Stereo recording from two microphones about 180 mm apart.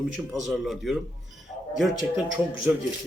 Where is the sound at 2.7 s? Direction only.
10° right (ahead or behind).